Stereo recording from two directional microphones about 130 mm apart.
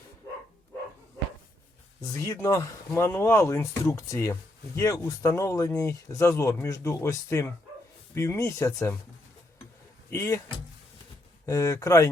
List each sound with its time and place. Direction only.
2.0 s speech: 25° left (ahead or behind)
10.1 s speech: 20° left (ahead or behind)
11.4 s speech: 25° left (ahead or behind)